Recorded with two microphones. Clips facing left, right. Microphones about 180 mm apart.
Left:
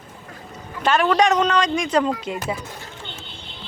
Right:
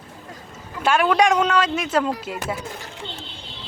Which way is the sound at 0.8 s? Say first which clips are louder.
Even; 10° right (ahead or behind).